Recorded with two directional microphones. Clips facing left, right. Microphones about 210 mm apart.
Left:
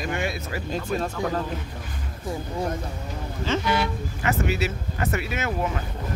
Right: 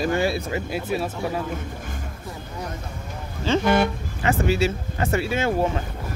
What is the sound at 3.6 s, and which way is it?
Speech, 50° right (ahead or behind).